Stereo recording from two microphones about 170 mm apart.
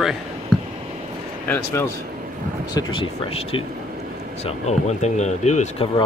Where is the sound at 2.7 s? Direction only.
30° left (ahead or behind).